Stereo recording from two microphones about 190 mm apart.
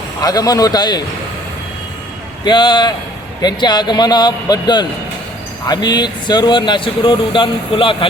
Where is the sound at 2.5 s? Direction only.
25° left (ahead or behind).